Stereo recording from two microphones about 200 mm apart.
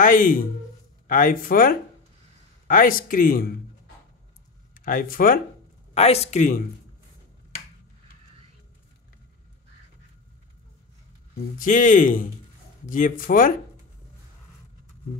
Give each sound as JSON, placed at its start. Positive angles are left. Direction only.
{"t": 0.0, "sound": "speech", "side_deg": 45}
{"t": 4.7, "sound": "speech", "side_deg": 45}
{"t": 5.9, "sound": "speech", "side_deg": 30}
{"t": 11.5, "sound": "speech", "side_deg": 40}